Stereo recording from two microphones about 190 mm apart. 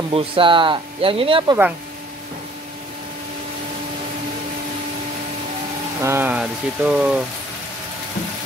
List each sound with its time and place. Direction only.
0.1 s speech: 30° right (ahead or behind)
6.0 s speech: 10° right (ahead or behind)